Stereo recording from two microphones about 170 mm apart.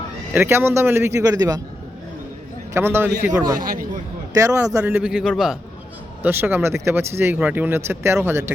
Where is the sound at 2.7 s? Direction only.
15° right (ahead or behind).